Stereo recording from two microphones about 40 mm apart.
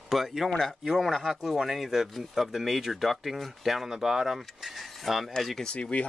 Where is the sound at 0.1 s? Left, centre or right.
Centre.